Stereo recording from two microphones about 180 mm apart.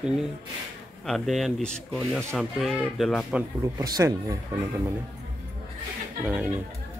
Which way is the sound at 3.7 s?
20° right (ahead or behind).